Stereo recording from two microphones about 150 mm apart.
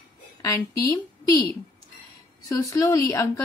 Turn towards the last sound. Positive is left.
turn(degrees=20)  # may be behind; listen again after turning